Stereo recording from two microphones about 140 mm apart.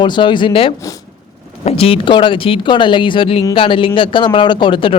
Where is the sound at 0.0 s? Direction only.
35° left (ahead or behind).